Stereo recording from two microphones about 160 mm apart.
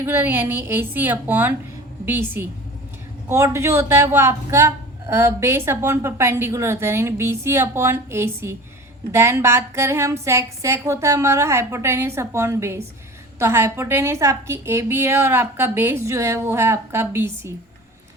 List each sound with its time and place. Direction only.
0.0 s a man's voice: 15° right (ahead or behind)